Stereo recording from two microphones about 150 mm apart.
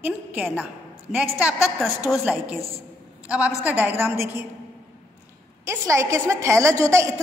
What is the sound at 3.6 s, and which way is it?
Speech, 10° right (ahead or behind).